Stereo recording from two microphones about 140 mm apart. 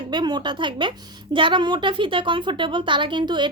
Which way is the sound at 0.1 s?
30° right (ahead or behind).